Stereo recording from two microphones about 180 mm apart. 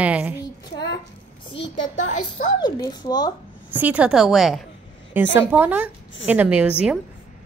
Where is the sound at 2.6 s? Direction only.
25° left (ahead or behind).